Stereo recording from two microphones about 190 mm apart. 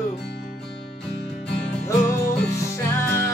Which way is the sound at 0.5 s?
5° left (ahead or behind).